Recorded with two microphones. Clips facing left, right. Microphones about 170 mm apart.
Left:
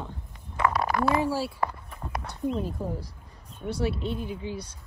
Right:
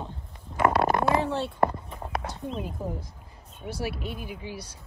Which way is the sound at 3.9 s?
25° left (ahead or behind).